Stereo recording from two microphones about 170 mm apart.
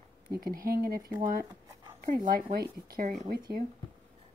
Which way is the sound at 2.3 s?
60° right (ahead or behind).